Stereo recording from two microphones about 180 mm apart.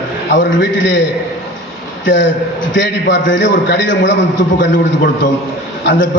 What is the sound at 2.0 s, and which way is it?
A man's voice, 90° left.